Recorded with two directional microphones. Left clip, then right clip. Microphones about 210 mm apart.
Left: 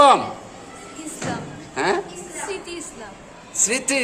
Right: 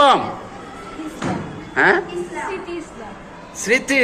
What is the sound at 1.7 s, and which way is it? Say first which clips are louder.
Speech: right 7 dB; 20° left (ahead or behind).